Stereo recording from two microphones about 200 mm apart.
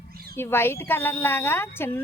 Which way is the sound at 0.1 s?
50° right (ahead or behind).